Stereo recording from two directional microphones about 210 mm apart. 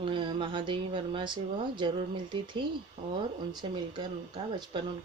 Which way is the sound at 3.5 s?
20° right (ahead or behind).